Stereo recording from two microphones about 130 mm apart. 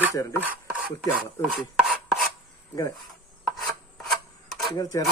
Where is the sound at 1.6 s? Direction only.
Centre (ahead or behind).